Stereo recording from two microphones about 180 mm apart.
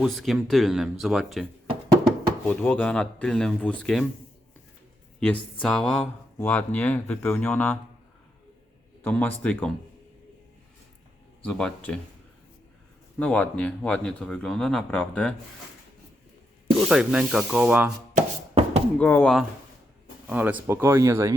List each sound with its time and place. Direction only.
0.0 s speech: centre (ahead or behind)
1.6 s music: 20° right (ahead or behind)
2.5 s speech: 10° left (ahead or behind)
5.6 s speech: 5° left (ahead or behind)
9.0 s speech: 10° left (ahead or behind)
11.4 s speech: 5° left (ahead or behind)
13.1 s speech: 5° left (ahead or behind)
16.7 s speech: 5° right (ahead or behind)
18.9 s speech: 10° left (ahead or behind)
20.2 s speech: 10° right (ahead or behind)